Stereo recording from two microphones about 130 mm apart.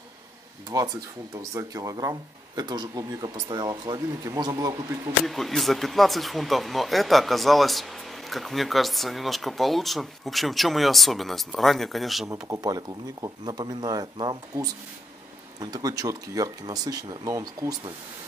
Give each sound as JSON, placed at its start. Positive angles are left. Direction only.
{"t": 0.7, "sound": "speech", "side_deg": -25}
{"t": 5.2, "sound": "speech", "side_deg": 0}
{"t": 12.3, "sound": "speech", "side_deg": -25}